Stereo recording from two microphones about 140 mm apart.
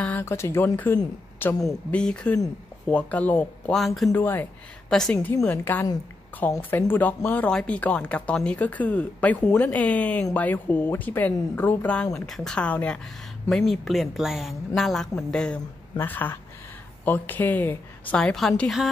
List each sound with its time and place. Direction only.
0.0 s a woman's voice: 15° left (ahead or behind)
2.0 s a woman's voice: 5° left (ahead or behind)
3.7 s speech: centre (ahead or behind)
4.1 s a woman's voice: 15° left (ahead or behind)